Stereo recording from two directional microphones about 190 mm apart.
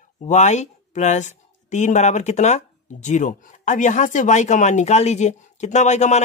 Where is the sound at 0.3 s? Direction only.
35° left (ahead or behind).